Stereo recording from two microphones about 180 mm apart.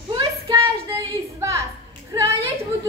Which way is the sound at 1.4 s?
15° right (ahead or behind).